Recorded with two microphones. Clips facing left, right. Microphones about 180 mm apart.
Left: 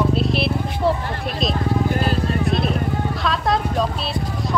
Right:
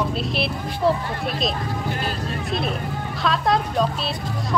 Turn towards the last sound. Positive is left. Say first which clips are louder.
# even
turn(degrees=0)  # may be behind; listen again after turning